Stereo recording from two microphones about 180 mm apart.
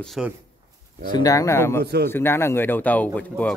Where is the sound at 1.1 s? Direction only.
20° left (ahead or behind).